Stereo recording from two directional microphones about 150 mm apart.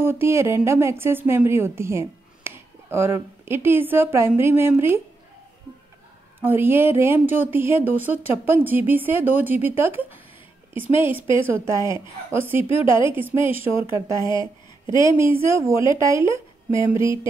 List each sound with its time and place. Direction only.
0.0 s a woman's voice: 15° right (ahead or behind)
6.4 s speech: 15° right (ahead or behind)
11.4 s speech: 15° right (ahead or behind)
12.6 s a woman's voice: 35° left (ahead or behind)
13.1 s speech: 15° right (ahead or behind)